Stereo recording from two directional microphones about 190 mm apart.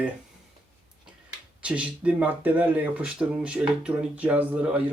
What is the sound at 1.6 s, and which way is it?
Speech, 5° right (ahead or behind).